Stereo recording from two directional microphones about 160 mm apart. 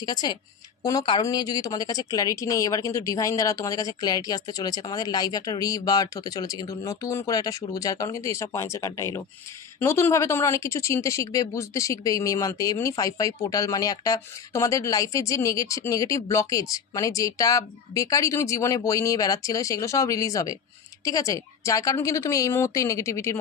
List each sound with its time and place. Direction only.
0.0 s speech: 25° left (ahead or behind)